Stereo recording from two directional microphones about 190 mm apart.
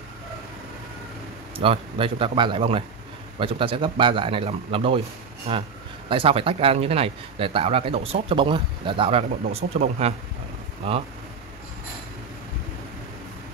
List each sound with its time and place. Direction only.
1.6 s speech: 30° right (ahead or behind)